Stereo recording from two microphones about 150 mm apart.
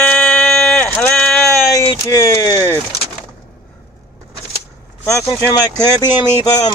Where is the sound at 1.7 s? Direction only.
25° left (ahead or behind).